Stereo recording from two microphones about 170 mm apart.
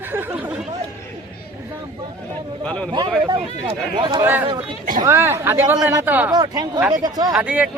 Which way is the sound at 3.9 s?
30° right (ahead or behind).